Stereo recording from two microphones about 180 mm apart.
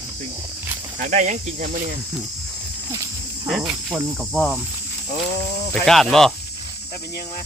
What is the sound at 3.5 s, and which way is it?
Cricket, 5° right (ahead or behind).